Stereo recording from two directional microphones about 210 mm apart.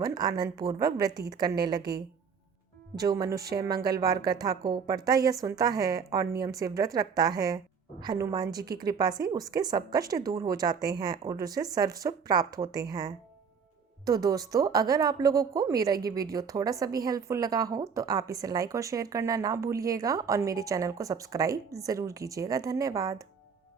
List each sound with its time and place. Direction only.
0.0 s a woman's voice: 20° right (ahead or behind)